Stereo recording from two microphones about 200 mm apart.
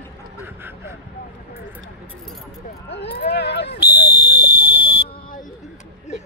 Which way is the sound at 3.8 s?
10° right (ahead or behind).